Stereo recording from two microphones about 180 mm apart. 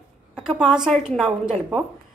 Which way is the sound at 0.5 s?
5° right (ahead or behind).